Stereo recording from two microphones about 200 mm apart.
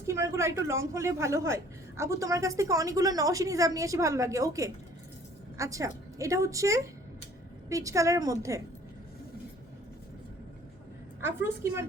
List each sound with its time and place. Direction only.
0.0 s a woman's voice: 15° right (ahead or behind)
11.2 s a woman's voice: 10° right (ahead or behind)